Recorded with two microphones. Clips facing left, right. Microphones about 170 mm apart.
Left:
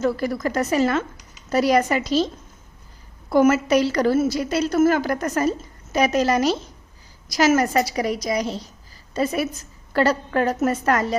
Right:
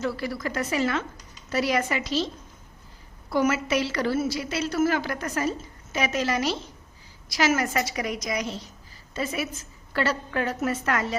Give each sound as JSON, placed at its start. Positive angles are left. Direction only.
{"t": 0.0, "sound": "a woman's voice", "side_deg": 45}
{"t": 3.2, "sound": "a woman's voice", "side_deg": 50}